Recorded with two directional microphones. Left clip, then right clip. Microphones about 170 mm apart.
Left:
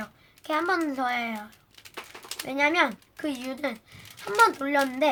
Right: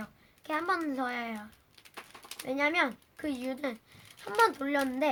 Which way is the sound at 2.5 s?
30° right (ahead or behind).